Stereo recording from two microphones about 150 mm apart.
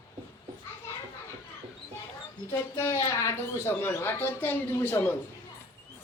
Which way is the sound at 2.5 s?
20° left (ahead or behind).